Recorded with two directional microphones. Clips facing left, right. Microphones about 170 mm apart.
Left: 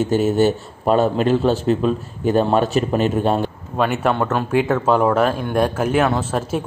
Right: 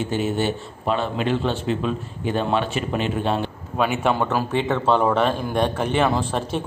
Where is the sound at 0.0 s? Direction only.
40° left (ahead or behind).